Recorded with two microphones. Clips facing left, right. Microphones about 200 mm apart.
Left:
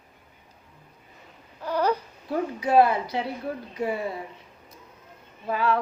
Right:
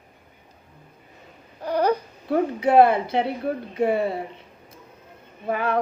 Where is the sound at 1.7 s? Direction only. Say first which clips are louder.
Right 3 dB; 15° right (ahead or behind).